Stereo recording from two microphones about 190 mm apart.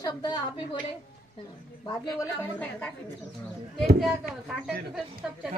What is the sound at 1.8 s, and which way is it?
Speech, 20° left (ahead or behind).